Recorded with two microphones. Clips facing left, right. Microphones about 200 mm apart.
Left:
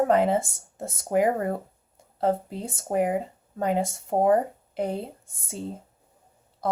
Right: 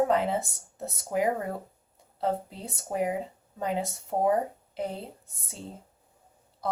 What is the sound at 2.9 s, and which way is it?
Speech, 55° left (ahead or behind).